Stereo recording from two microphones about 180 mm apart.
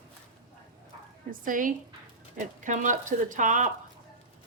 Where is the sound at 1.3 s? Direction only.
50° right (ahead or behind).